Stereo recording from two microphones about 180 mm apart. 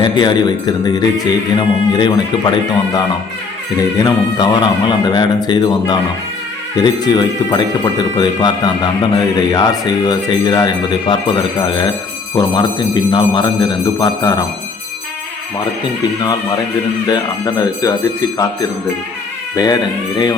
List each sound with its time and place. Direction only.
0.0 s speech: 25° left (ahead or behind)
12.9 s speech: 25° left (ahead or behind)
17.1 s speech: 20° left (ahead or behind)
19.5 s speech: 20° left (ahead or behind)